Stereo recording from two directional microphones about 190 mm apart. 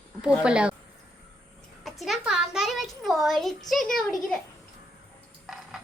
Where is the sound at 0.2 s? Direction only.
5° right (ahead or behind).